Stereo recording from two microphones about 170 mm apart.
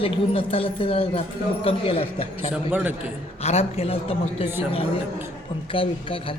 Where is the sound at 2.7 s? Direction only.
10° right (ahead or behind).